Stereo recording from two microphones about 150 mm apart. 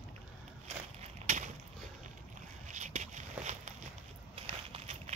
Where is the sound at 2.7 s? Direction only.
50° right (ahead or behind).